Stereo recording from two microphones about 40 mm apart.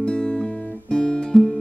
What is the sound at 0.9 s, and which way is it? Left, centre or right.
Guitar, centre.